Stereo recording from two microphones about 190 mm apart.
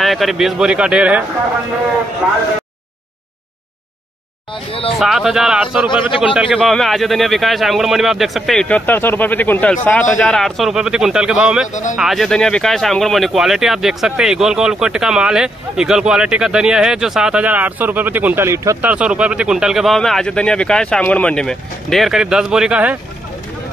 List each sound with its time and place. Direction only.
0.0 s speech: centre (ahead or behind)
4.9 s speech: centre (ahead or behind)
11.7 s speech: 40° left (ahead or behind)
12.0 s speech: centre (ahead or behind)